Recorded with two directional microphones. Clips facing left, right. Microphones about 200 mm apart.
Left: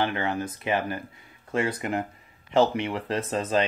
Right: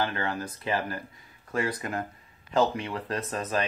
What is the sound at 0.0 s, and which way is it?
Speech, 20° left (ahead or behind).